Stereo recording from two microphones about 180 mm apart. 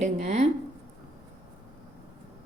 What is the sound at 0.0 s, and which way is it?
Speech, 40° right (ahead or behind).